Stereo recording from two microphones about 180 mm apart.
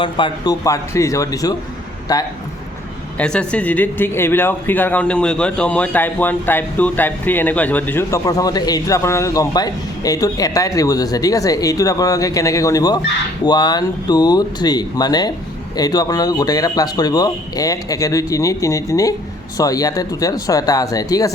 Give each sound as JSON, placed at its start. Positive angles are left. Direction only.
{"t": 0.0, "sound": "speech", "side_deg": 25}
{"t": 3.2, "sound": "speech", "side_deg": 5}